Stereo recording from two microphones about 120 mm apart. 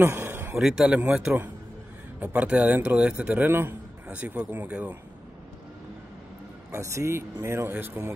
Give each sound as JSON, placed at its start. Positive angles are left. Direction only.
{"t": 0.0, "sound": "a sound", "side_deg": -20}
{"t": 0.6, "sound": "a man's voice", "side_deg": -5}
{"t": 6.7, "sound": "speech", "side_deg": -25}